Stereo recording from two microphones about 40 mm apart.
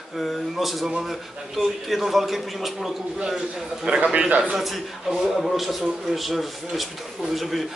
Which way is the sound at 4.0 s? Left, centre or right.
Right.